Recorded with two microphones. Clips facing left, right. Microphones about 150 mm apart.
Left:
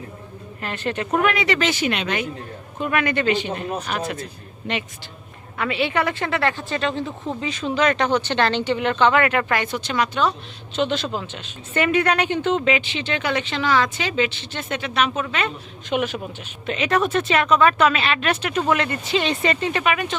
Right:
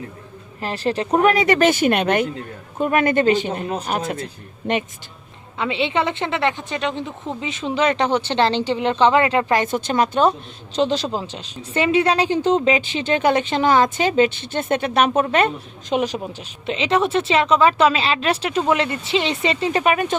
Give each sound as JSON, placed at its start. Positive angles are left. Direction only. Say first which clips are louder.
{"t": 0.6, "sound": "a woman's voice", "louder": "right 4 dB", "side_deg": -35}
{"t": 2.7, "sound": "a woman's voice", "louder": "right 5 dB", "side_deg": -40}
{"t": 5.5, "sound": "a woman's voice", "louder": "right 1 dB", "side_deg": -20}
{"t": 9.6, "sound": "a woman's voice", "louder": "right 4 dB", "side_deg": -50}
{"t": 10.8, "sound": "a woman's voice", "louder": "right 3 dB", "side_deg": -35}
{"t": 16.0, "sound": "a woman's voice", "louder": "right 2 dB", "side_deg": -35}
{"t": 19.7, "sound": "speech", "louder": "right 4 dB", "side_deg": -40}